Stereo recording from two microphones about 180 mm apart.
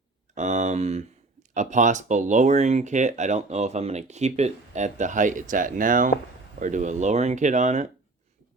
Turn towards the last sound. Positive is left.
turn(degrees=-40)  # may be behind; listen again after turning